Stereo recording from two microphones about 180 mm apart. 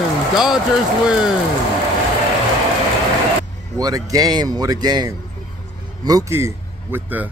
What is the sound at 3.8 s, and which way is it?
Speech, 20° right (ahead or behind).